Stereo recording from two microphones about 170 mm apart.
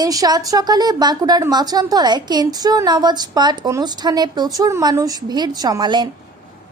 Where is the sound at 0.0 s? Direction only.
20° right (ahead or behind).